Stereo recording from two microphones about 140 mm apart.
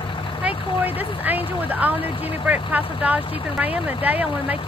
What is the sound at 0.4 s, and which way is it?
Speech, 10° right (ahead or behind).